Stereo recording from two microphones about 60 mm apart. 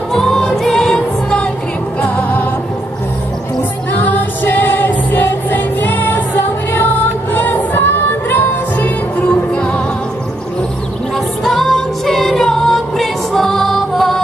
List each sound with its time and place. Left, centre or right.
0.1 s music: centre
2.0 s music: left
4.0 s music: left
9.2 s music: centre
11.4 s music: centre